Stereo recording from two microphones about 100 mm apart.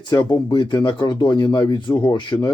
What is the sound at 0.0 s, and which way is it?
Speech, 50° left (ahead or behind).